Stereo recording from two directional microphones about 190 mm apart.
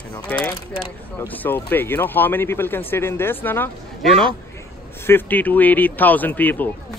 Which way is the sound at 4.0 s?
Centre (ahead or behind).